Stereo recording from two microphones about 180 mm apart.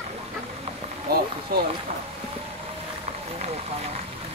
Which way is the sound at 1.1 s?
60° right (ahead or behind).